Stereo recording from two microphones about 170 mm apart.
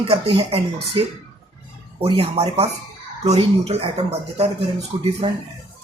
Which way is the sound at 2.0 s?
35° right (ahead or behind).